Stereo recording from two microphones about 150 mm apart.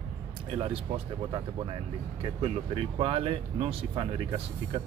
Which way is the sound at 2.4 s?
40° right (ahead or behind).